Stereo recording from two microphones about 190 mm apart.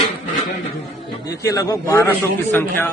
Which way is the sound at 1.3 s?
20° left (ahead or behind).